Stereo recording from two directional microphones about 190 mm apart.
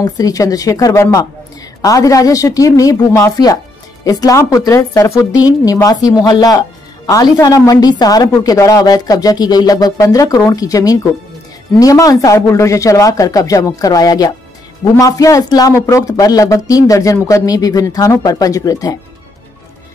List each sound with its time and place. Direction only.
0.0 s a woman's voice: 20° left (ahead or behind)